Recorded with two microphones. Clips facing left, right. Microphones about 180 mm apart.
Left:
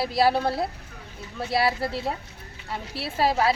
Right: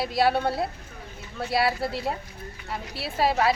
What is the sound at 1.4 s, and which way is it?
Speech, centre (ahead or behind).